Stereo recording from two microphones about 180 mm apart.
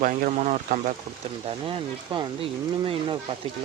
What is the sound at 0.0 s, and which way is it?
Speech, 45° right (ahead or behind).